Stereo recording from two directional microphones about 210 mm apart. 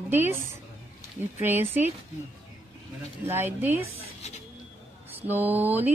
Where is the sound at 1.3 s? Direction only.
10° right (ahead or behind).